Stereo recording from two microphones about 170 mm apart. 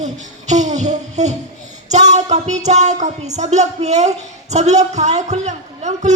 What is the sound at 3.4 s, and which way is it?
A woman's voice, 40° right (ahead or behind).